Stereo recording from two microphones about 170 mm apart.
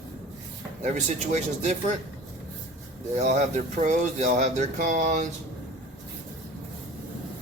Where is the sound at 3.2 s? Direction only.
45° right (ahead or behind).